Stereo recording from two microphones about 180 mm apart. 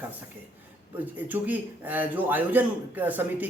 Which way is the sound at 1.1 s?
10° right (ahead or behind).